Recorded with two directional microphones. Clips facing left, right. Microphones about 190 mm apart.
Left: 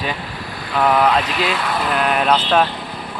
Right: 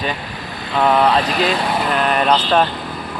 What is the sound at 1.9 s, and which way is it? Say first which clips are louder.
Speech: even; centre (ahead or behind).